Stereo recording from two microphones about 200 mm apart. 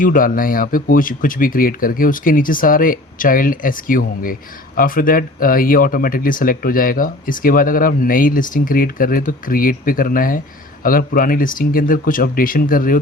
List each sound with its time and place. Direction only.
0.0 s a man's voice: 45° left (ahead or behind)